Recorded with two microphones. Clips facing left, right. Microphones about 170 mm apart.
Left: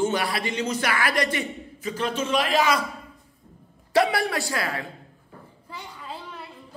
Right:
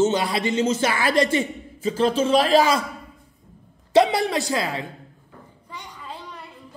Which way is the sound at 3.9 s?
20° right (ahead or behind).